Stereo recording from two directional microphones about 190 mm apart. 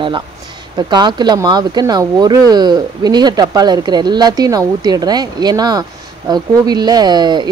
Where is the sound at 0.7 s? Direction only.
25° right (ahead or behind).